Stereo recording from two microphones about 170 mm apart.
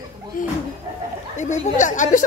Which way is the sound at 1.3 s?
45° left (ahead or behind).